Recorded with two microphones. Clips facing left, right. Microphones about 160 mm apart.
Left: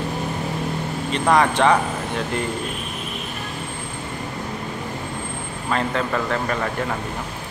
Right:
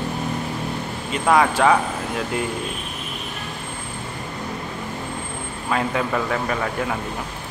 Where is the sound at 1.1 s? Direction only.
5° right (ahead or behind).